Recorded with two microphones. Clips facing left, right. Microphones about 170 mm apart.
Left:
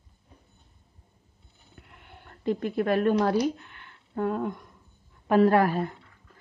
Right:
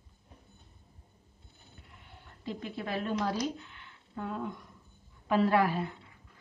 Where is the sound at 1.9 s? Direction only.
65° left (ahead or behind).